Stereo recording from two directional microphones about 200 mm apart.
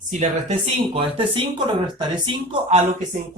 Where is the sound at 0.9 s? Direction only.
25° right (ahead or behind).